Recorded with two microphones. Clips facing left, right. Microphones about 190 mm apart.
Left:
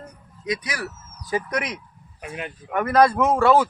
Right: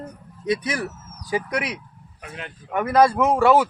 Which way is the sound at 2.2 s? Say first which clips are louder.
Left 4 dB; 15° left (ahead or behind).